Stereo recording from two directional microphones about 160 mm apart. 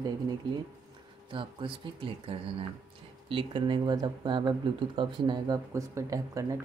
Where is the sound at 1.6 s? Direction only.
30° right (ahead or behind).